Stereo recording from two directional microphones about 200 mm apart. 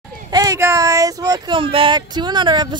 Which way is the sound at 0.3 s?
20° right (ahead or behind).